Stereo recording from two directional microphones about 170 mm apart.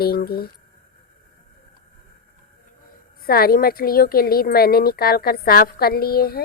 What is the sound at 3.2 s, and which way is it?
Speech, 60° left (ahead or behind).